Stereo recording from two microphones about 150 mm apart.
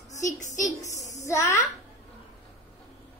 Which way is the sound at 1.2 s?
20° left (ahead or behind).